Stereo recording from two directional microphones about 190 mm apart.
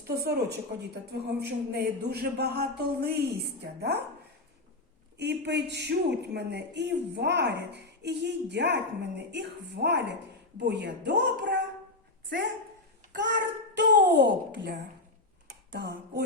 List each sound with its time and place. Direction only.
0.2 s a man's voice: 60° right (ahead or behind)
5.1 s a man's voice: 60° right (ahead or behind)
13.1 s a child's voice: 65° right (ahead or behind)